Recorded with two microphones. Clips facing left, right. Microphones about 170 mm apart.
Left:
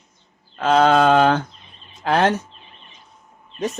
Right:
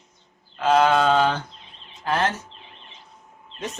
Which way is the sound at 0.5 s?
60° left (ahead or behind).